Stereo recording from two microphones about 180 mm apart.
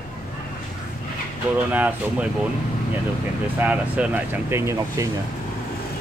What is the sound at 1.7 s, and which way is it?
Speech, 10° right (ahead or behind).